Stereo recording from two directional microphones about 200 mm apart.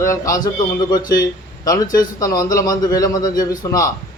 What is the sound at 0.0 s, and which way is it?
A man's voice, 15° left (ahead or behind).